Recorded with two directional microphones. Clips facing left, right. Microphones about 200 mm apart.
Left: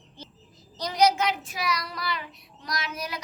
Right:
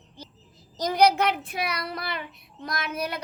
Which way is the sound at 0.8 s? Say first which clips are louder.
Right 2 dB; 55° right (ahead or behind).